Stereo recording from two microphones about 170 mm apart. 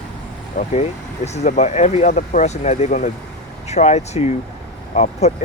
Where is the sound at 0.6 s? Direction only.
50° left (ahead or behind).